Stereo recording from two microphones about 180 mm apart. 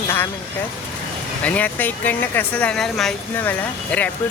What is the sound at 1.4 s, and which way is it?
Speech, 10° left (ahead or behind).